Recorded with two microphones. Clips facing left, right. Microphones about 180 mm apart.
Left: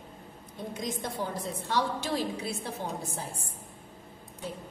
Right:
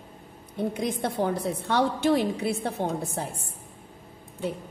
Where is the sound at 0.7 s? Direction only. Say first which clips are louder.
Right 2 dB; 65° right (ahead or behind).